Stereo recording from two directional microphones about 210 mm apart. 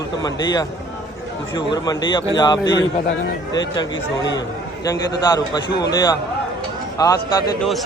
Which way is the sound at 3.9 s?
60° left (ahead or behind).